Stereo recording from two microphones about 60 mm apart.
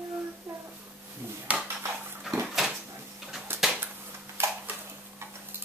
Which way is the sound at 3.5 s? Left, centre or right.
Right.